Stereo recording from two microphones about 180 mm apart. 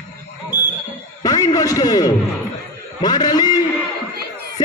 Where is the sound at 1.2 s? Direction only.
20° left (ahead or behind).